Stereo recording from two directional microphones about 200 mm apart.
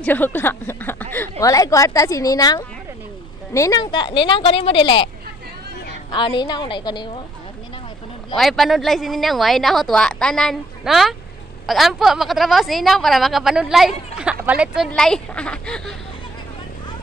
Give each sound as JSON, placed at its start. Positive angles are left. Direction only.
{"t": 0.0, "sound": "a woman's voice", "side_deg": 10}
{"t": 6.1, "sound": "a woman's voice", "side_deg": 25}
{"t": 8.4, "sound": "a woman's voice", "side_deg": 0}